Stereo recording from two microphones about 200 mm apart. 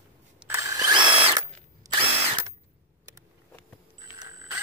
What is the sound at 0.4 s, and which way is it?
Drill, 10° right (ahead or behind).